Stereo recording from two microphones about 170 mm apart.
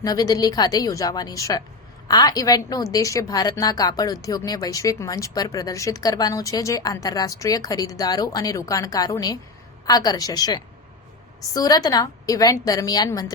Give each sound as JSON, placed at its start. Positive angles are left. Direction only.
{"t": 0.0, "sound": "a woman's voice", "side_deg": 20}